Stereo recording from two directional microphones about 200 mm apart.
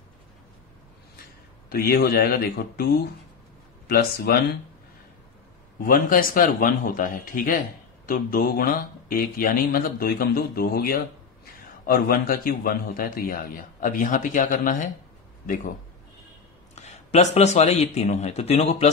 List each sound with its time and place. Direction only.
1.7 s a man's voice: 50° left (ahead or behind)
3.9 s a man's voice: 50° left (ahead or behind)
5.8 s a man's voice: 45° left (ahead or behind)
16.7 s speech: 35° left (ahead or behind)